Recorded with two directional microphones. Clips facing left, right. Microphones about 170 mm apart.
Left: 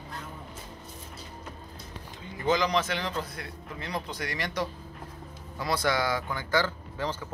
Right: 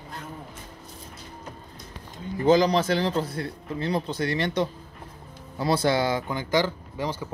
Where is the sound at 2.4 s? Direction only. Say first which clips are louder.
Right 7 dB; 35° right (ahead or behind).